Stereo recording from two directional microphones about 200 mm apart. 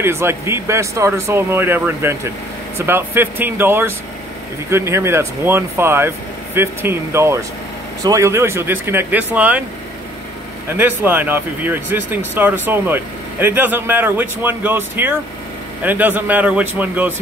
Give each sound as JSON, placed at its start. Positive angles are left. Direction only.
{"t": 0.0, "sound": "speech", "side_deg": -10}
{"t": 10.8, "sound": "speech", "side_deg": -10}